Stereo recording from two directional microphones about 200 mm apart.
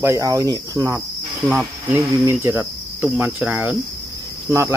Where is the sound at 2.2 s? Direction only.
15° right (ahead or behind).